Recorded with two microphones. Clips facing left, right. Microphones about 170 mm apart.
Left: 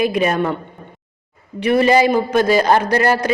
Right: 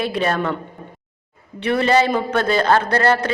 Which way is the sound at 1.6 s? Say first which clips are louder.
Left 3 dB; 10° left (ahead or behind).